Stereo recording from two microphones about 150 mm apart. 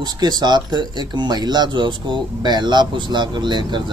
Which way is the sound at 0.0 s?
25° right (ahead or behind).